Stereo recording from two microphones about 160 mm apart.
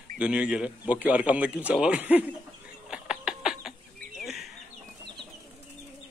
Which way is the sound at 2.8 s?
5° right (ahead or behind).